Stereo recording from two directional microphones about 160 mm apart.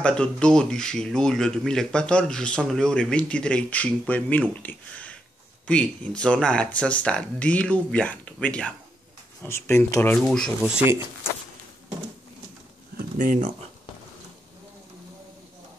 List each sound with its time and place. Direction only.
0.0 s speech: 5° left (ahead or behind)
10.6 s speech: 10° right (ahead or behind)
12.9 s speech: 55° right (ahead or behind)